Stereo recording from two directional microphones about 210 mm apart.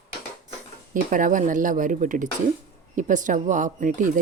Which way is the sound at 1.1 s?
40° right (ahead or behind).